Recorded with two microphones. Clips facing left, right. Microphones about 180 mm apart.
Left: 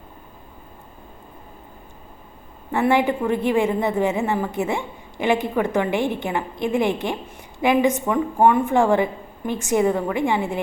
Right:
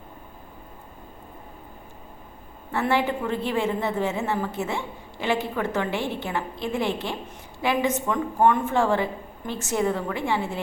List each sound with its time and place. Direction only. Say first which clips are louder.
2.7 s a woman's voice: left 5 dB; 15° left (ahead or behind)